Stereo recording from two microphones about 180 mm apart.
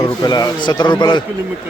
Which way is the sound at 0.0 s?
25° left (ahead or behind).